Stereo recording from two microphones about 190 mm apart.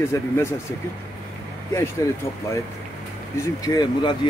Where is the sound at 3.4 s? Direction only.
20° left (ahead or behind).